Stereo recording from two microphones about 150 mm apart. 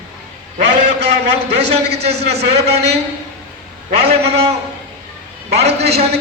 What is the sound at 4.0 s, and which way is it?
Speech, 45° right (ahead or behind).